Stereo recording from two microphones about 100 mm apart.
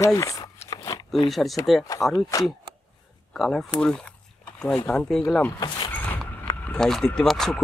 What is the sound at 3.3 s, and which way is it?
Speech, centre (ahead or behind).